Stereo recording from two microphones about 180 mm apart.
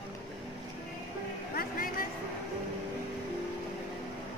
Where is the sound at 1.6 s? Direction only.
55° left (ahead or behind).